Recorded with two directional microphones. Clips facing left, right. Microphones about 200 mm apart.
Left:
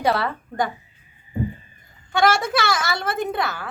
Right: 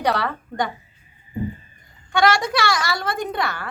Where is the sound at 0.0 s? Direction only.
5° left (ahead or behind).